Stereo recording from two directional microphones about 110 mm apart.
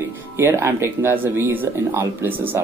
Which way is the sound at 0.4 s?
25° right (ahead or behind).